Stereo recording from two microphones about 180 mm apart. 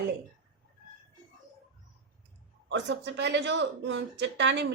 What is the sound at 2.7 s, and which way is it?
Speech, 80° right.